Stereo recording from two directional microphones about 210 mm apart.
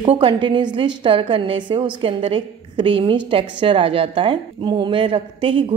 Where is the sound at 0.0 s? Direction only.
25° right (ahead or behind).